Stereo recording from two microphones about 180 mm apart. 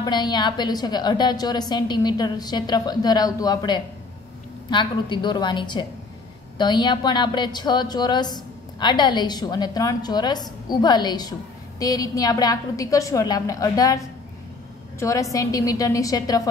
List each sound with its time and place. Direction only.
0.0 s a woman's voice: 25° left (ahead or behind)